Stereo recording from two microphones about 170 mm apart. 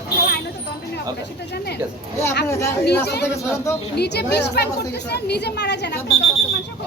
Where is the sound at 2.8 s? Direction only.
75° left (ahead or behind).